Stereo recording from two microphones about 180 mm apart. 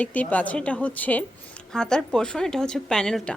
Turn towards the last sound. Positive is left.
turn(degrees=5)  # may be behind; listen again after turning